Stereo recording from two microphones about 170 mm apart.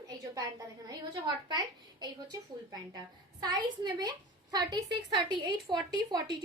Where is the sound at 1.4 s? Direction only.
25° right (ahead or behind).